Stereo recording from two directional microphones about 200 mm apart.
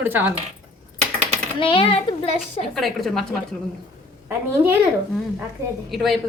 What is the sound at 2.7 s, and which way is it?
Speech, centre (ahead or behind).